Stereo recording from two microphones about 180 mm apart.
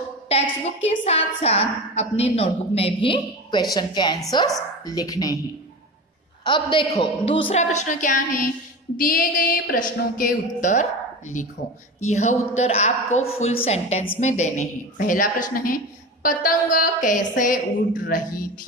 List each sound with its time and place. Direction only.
0.8 s a woman's voice: 35° left (ahead or behind); by 5.4 s 20° left (ahead or behind)
6.4 s a woman's voice: 25° left (ahead or behind); by 18.7 s 50° left (ahead or behind)